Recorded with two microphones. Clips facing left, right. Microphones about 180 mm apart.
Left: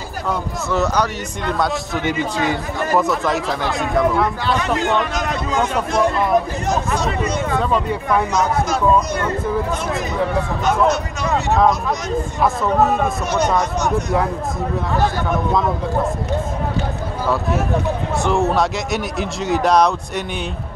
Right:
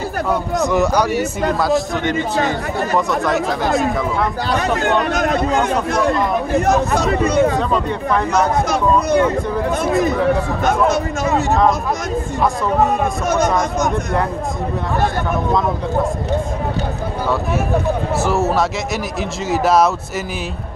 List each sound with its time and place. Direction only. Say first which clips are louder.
0.7 s a man's voice: right 2 dB; 10° right (ahead or behind)
1.6 s speech: right 2 dB; centre (ahead or behind)
4.8 s speech: right 3 dB; 60° right (ahead or behind)
7.0 s speech: right 6 dB; 60° right (ahead or behind)
12.4 s speech: even; centre (ahead or behind)
18.2 s speech: left 1 dB; 5° right (ahead or behind)